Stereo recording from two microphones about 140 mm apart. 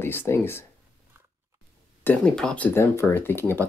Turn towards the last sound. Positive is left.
turn(degrees=15)  # may be behind; listen again after turning